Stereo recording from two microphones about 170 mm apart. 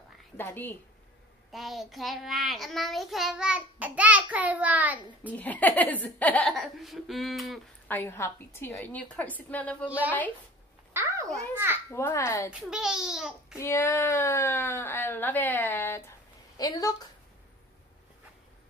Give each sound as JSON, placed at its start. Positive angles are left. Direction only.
{"t": 0.4, "sound": "speech", "side_deg": 10}
{"t": 1.5, "sound": "child singing", "side_deg": 0}
{"t": 5.3, "sound": "speech", "side_deg": 10}
{"t": 6.5, "sound": "child singing", "side_deg": 0}
{"t": 7.9, "sound": "speech", "side_deg": 15}
{"t": 9.8, "sound": "a child's voice", "side_deg": -10}
{"t": 10.9, "sound": "a sound", "side_deg": -15}
{"t": 11.5, "sound": "a child's voice", "side_deg": -15}
{"t": 11.9, "sound": "speech", "side_deg": 15}
{"t": 12.5, "sound": "child singing", "side_deg": -5}
{"t": 13.6, "sound": "a woman's voice", "side_deg": 15}